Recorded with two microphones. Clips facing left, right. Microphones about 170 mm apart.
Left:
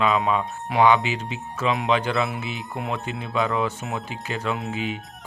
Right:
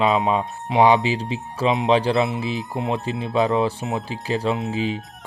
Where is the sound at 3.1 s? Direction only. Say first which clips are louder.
Right 5 dB; centre (ahead or behind).